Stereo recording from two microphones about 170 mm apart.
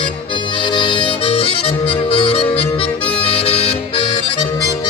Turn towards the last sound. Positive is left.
turn(degrees=35)  # may be behind; listen again after turning